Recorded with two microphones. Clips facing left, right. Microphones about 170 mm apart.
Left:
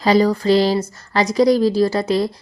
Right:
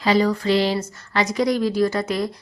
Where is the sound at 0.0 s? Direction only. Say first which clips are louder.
Left 4 dB; 40° left (ahead or behind).